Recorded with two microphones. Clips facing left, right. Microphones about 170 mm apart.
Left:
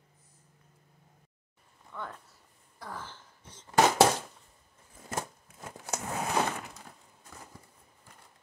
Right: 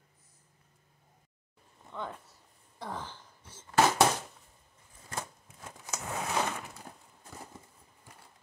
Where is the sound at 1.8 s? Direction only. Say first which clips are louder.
Right 2 dB; 20° right (ahead or behind).